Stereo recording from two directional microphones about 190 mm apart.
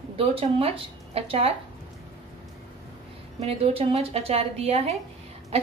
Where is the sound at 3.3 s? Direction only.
30° right (ahead or behind).